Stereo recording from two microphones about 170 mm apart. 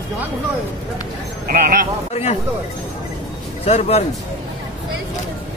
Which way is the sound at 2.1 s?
40° left (ahead or behind).